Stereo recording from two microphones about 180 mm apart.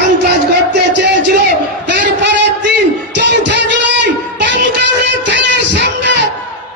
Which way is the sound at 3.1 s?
80° right.